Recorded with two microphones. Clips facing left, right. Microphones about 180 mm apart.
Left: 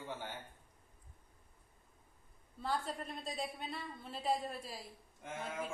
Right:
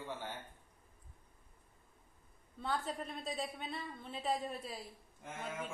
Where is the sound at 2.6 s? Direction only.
Centre (ahead or behind).